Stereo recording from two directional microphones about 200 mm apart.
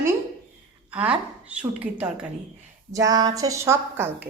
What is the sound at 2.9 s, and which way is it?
A woman's voice, 15° right (ahead or behind).